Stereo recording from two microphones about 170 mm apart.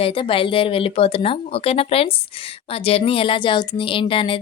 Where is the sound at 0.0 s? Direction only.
30° left (ahead or behind).